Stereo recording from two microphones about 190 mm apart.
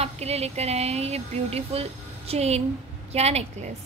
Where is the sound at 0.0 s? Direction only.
35° right (ahead or behind).